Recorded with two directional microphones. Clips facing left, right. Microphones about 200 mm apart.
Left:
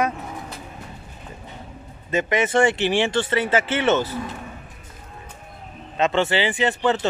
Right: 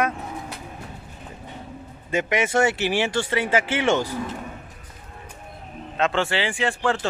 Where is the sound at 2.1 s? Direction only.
10° right (ahead or behind).